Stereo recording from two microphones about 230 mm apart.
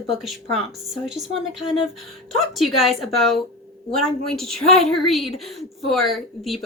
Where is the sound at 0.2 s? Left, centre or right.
Centre.